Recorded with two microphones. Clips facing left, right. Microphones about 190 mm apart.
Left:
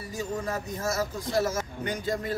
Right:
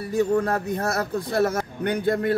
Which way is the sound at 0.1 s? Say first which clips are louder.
Right 10 dB; 60° right (ahead or behind).